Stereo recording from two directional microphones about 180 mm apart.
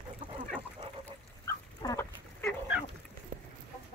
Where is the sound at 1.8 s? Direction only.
10° left (ahead or behind).